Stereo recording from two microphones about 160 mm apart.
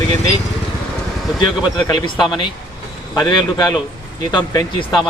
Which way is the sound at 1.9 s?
25° left (ahead or behind).